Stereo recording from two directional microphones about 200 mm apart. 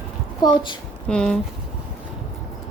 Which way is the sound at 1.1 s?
5° left (ahead or behind).